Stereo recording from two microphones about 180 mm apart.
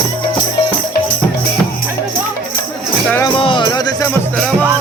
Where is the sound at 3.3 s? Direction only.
30° left (ahead or behind).